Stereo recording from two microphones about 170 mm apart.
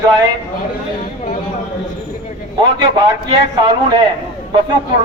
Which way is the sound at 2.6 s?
30° right (ahead or behind).